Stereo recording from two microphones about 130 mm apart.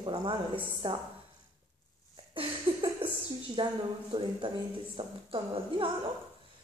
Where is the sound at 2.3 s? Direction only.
45° right (ahead or behind).